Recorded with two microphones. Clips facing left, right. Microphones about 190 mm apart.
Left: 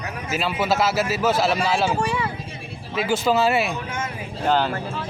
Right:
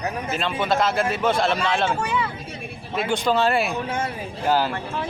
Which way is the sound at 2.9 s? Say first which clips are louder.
Left 1 dB; 5° left (ahead or behind).